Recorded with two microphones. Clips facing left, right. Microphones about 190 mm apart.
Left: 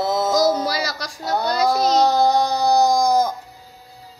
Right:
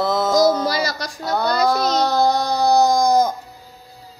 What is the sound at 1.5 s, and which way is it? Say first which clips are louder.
Music: right 1 dB; 60° right (ahead or behind).